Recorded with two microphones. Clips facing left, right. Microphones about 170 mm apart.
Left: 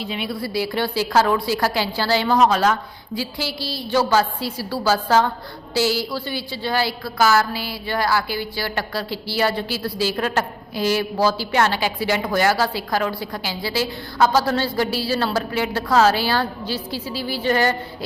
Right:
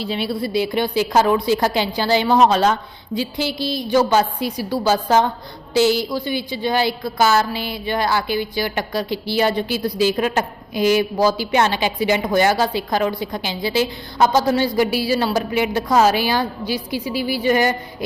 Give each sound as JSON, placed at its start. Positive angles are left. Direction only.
{"t": 0.0, "sound": "a woman's voice", "side_deg": -35}